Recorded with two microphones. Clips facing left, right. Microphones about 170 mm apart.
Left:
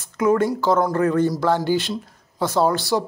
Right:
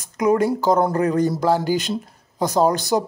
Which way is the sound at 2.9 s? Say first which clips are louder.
Right 1 dB; 20° right (ahead or behind).